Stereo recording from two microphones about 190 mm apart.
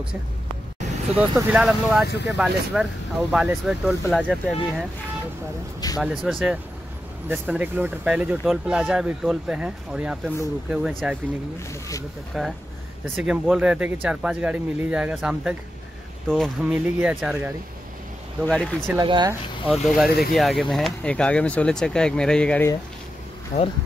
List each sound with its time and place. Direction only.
1.1 s speech: 5° right (ahead or behind)
5.9 s speech: 5° right (ahead or behind)
12.3 s speech: 5° right (ahead or behind)
18.4 s speech: 5° left (ahead or behind)
18.9 s speech: 20° right (ahead or behind)
19.7 s speech: centre (ahead or behind)
23.5 s speech: 35° left (ahead or behind)